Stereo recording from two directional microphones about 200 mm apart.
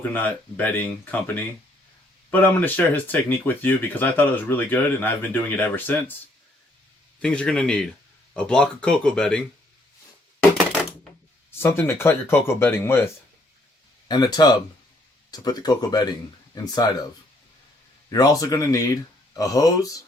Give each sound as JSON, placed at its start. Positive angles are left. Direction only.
{"t": 0.1, "sound": "speech", "side_deg": 10}
{"t": 2.3, "sound": "speech", "side_deg": 10}
{"t": 7.2, "sound": "speech", "side_deg": 5}
{"t": 11.6, "sound": "speech", "side_deg": 10}
{"t": 14.1, "sound": "speech", "side_deg": 20}
{"t": 18.1, "sound": "speech", "side_deg": 20}